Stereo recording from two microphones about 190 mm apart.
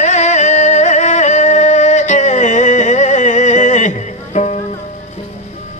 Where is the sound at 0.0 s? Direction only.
40° left (ahead or behind).